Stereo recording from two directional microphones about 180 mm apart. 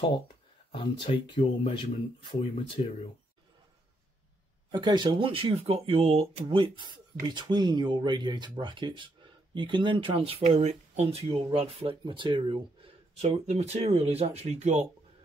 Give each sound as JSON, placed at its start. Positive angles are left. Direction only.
{"t": 0.7, "sound": "speech", "side_deg": 30}
{"t": 4.6, "sound": "speech", "side_deg": -25}